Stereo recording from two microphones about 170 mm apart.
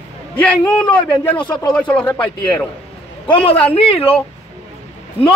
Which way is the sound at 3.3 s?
30° left (ahead or behind).